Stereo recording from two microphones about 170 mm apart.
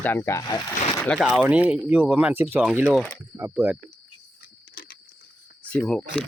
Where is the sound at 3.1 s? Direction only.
15° right (ahead or behind).